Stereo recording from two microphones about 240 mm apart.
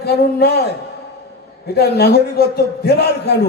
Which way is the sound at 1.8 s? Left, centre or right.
Left.